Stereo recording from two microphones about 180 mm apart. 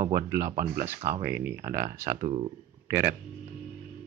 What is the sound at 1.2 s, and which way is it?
Speech, 10° right (ahead or behind).